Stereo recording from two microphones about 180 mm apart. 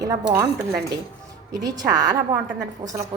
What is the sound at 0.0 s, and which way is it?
Speech, 20° right (ahead or behind).